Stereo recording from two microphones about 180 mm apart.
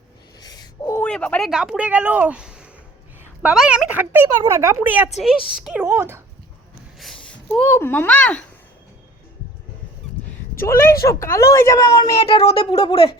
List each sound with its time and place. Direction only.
0.3 s owl: 20° left (ahead or behind)
1.0 s speech: 5° left (ahead or behind); by 6.2 s 15° right (ahead or behind)
7.5 s speech: 10° left (ahead or behind)
10.5 s speech: 15° left (ahead or behind)
12.2 s speech: 30° left (ahead or behind)